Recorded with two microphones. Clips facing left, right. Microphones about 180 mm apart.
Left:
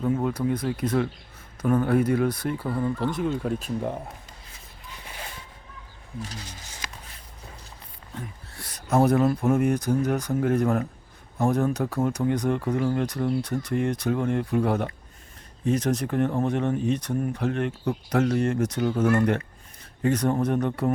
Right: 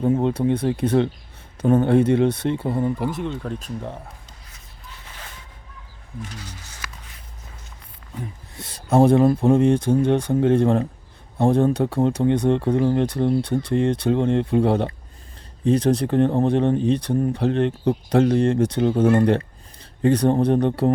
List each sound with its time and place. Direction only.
0.0 s speech: 30° right (ahead or behind)
3.1 s speech: centre (ahead or behind)
5.0 s a sound: 15° left (ahead or behind)
8.5 s speech: 25° right (ahead or behind)